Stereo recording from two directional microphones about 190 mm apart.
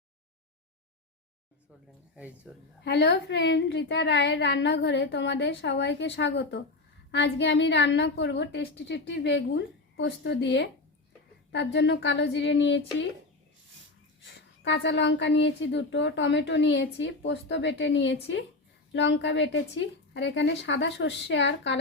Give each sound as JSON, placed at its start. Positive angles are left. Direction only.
{"t": 2.1, "sound": "speech", "side_deg": -5}
{"t": 2.8, "sound": "speech", "side_deg": 65}
{"t": 14.3, "sound": "speech", "side_deg": 65}